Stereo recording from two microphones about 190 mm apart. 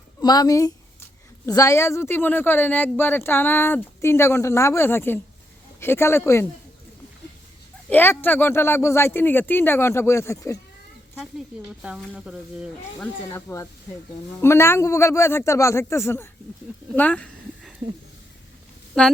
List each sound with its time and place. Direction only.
0.2 s speech: 20° left (ahead or behind)
7.9 s speech: 10° left (ahead or behind)
11.2 s speech: centre (ahead or behind)
13.0 s speech: 15° left (ahead or behind)
19.0 s speech: 5° left (ahead or behind)